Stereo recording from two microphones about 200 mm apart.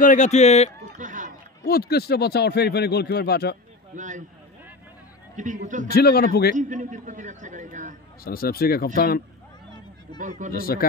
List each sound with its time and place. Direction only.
0.0 s speech: 40° left (ahead or behind)
0.8 s a sound: 40° right (ahead or behind)
1.7 s speech: 50° left (ahead or behind)
3.9 s speech: 40° right (ahead or behind)
5.3 s a man's voice: 40° right (ahead or behind)
5.9 s speech: 50° left (ahead or behind)
6.5 s a man's voice: 40° right (ahead or behind)
8.2 s speech: 50° left (ahead or behind)
10.2 s a man's voice: 40° right (ahead or behind)
10.5 s speech: 45° left (ahead or behind)